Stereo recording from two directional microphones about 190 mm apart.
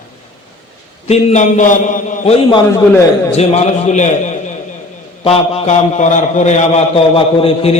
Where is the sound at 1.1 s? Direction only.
35° left (ahead or behind).